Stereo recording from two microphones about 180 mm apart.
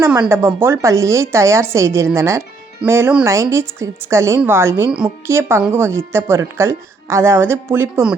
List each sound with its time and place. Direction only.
0.0 s a woman's voice: 15° right (ahead or behind)